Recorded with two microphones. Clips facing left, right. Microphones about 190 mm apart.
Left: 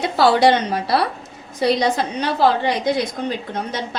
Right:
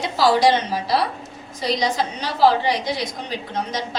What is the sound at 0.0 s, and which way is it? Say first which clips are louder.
A woman's voice: left 2 dB; 60° left (ahead or behind).